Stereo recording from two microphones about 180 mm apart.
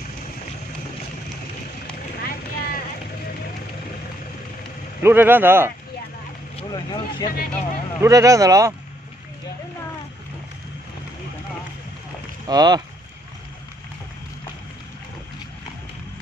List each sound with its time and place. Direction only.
2.2 s vehicle: 55° left (ahead or behind)
5.0 s speech: 10° right (ahead or behind)
6.7 s speech: 25° left (ahead or behind)
7.2 s speech: 55° left (ahead or behind)
8.0 s speech: 15° right (ahead or behind)
12.4 s speech: 20° right (ahead or behind)